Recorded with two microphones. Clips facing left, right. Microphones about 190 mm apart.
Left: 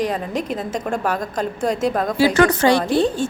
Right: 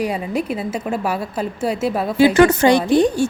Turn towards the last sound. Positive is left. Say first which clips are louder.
# right 3 dB
turn(degrees=-15)  # may be behind; listen again after turning